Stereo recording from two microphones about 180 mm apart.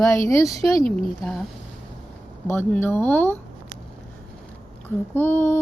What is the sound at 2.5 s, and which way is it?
Speech, 10° left (ahead or behind).